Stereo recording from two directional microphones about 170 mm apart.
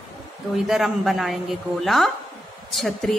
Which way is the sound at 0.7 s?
5° right (ahead or behind).